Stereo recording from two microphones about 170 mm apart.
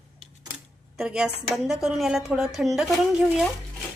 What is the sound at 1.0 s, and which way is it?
A woman's voice, 5° right (ahead or behind).